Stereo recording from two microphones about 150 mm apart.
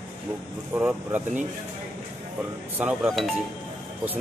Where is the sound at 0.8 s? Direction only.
10° right (ahead or behind).